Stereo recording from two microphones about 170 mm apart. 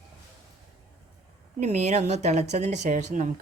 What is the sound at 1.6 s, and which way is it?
Speech, 40° right (ahead or behind).